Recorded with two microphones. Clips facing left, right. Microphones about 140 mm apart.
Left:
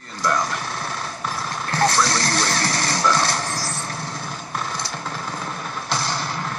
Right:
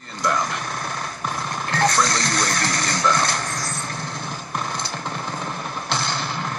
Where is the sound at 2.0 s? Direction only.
30° left (ahead or behind).